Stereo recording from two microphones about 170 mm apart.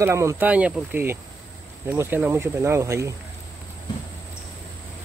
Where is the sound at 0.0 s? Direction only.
15° right (ahead or behind).